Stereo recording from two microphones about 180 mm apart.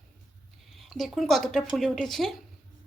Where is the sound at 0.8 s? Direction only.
Centre (ahead or behind).